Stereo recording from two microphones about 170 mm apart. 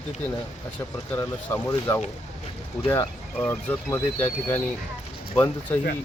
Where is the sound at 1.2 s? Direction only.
15° left (ahead or behind).